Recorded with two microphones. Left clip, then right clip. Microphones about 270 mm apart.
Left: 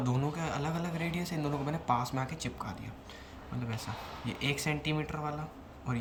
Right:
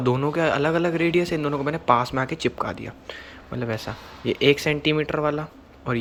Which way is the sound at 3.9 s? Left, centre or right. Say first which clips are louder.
Right 12 dB; centre.